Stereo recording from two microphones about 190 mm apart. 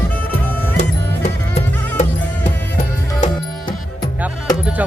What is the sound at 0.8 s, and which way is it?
Music, 40° left (ahead or behind).